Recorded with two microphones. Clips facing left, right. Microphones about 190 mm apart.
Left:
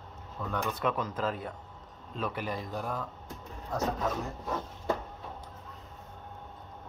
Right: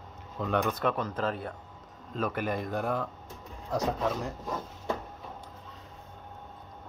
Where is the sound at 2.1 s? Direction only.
50° right (ahead or behind).